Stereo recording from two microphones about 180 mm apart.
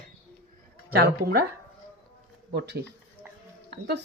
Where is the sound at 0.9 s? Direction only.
60° right (ahead or behind).